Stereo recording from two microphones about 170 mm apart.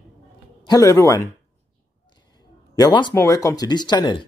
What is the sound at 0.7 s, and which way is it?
Speech, 20° left (ahead or behind).